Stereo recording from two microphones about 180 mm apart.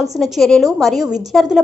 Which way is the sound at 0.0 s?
Centre (ahead or behind).